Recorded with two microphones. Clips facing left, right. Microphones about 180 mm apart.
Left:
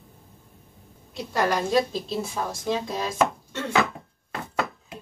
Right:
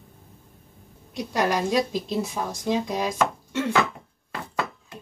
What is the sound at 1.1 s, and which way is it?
A woman's voice, 15° right (ahead or behind).